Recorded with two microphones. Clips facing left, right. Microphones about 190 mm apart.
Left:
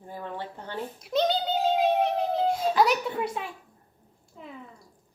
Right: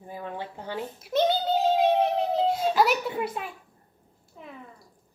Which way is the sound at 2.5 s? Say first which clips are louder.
Left 2 dB; centre (ahead or behind).